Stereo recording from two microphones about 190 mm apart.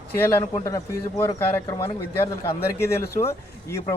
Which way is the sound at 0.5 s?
20° left (ahead or behind).